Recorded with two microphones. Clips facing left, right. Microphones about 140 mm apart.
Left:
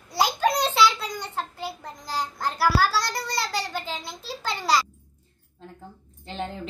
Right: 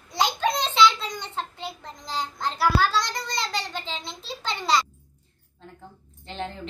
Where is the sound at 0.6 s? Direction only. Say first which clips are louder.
Right 1 dB; 5° left (ahead or behind).